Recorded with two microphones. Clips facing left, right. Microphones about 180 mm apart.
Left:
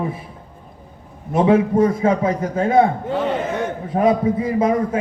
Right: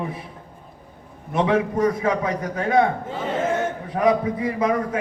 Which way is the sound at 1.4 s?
30° left (ahead or behind).